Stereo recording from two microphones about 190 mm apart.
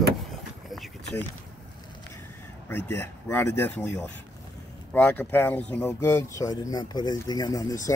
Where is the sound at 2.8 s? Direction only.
10° left (ahead or behind).